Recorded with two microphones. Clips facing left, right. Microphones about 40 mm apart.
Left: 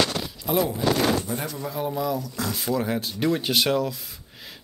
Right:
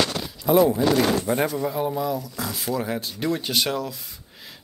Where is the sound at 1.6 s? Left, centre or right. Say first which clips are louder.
Right 3 dB; centre.